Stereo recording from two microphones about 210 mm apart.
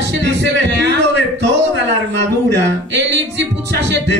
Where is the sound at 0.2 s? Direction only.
55° right (ahead or behind).